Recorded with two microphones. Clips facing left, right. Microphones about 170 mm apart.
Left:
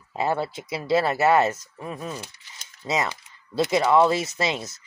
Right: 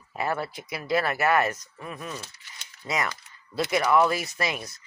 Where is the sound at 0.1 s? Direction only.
25° left (ahead or behind).